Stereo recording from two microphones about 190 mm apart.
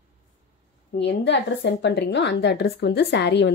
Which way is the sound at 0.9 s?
65° left (ahead or behind).